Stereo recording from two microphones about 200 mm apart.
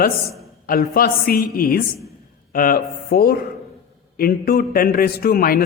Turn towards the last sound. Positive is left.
turn(degrees=45)  # may be behind; listen again after turning